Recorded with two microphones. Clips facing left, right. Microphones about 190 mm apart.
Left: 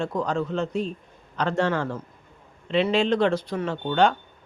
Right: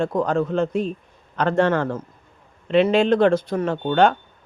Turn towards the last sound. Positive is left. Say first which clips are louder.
# right 4 dB
turn(degrees=-55)  # may be behind; listen again after turning